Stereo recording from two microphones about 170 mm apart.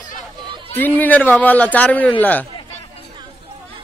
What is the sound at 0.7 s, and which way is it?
Speech, 10° left (ahead or behind).